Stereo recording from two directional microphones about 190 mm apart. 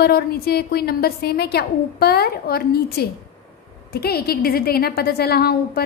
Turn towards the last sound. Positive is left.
turn(degrees=55)  # may be behind; listen again after turning